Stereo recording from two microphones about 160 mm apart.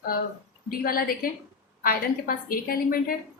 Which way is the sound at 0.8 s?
65° left (ahead or behind).